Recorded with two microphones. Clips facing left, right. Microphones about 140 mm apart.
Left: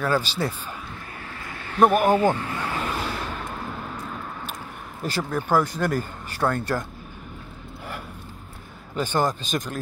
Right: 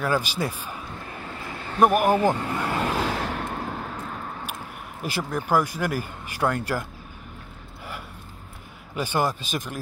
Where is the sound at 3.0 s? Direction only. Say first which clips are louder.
Right 3 dB; 90° right.